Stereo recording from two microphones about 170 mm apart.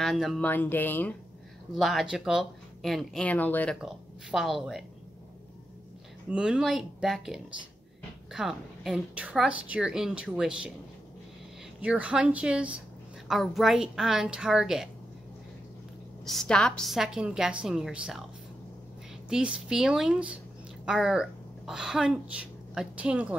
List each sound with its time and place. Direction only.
0.0 s a woman's voice: centre (ahead or behind)
0.5 s speech: 10° left (ahead or behind)
1.8 s a woman's voice: centre (ahead or behind)
3.8 s a woman's voice: centre (ahead or behind)
6.3 s a woman's voice: 5° right (ahead or behind)
11.8 s a woman's voice: 5° right (ahead or behind)
16.3 s a woman's voice: 5° left (ahead or behind)
19.2 s a woman's voice: 5° right (ahead or behind)